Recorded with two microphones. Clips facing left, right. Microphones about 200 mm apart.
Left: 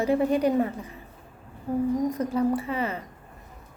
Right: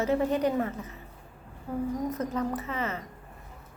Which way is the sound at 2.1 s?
10° left (ahead or behind).